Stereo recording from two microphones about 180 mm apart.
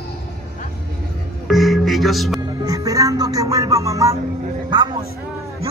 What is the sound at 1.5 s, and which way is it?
Music, centre (ahead or behind).